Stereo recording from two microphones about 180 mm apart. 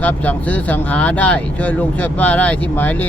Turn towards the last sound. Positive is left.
turn(degrees=10)  # may be behind; listen again after turning